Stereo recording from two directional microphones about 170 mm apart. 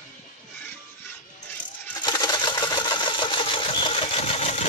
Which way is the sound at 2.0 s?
25° left (ahead or behind).